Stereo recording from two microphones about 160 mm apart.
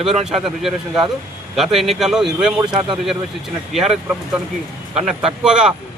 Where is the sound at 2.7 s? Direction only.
30° right (ahead or behind).